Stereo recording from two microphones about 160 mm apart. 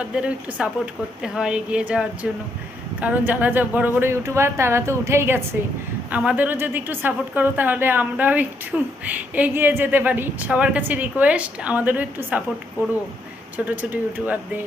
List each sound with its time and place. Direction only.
0.2 s a woman's voice: 5° right (ahead or behind)
13.7 s a woman's voice: 10° right (ahead or behind)